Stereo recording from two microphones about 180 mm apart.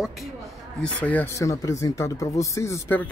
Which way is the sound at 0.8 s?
10° left (ahead or behind).